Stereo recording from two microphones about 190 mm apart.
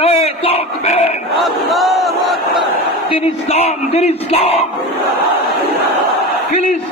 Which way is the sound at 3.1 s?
35° left (ahead or behind).